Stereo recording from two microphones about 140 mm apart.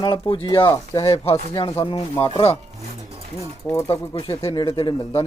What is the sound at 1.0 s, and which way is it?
Speech, 45° left (ahead or behind).